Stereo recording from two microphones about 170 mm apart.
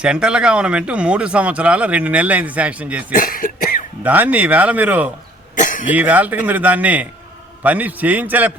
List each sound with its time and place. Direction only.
0.0 s speech: 5° right (ahead or behind)
3.1 s cough: 55° left (ahead or behind)
4.0 s speech: 10° right (ahead or behind)
5.5 s cough: 50° left (ahead or behind)
5.9 s speech: 10° right (ahead or behind)